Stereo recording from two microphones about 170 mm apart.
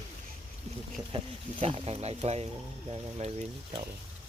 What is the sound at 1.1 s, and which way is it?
Speech, 35° right (ahead or behind).